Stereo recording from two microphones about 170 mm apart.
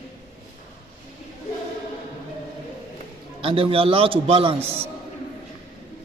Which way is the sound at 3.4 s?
30° right (ahead or behind).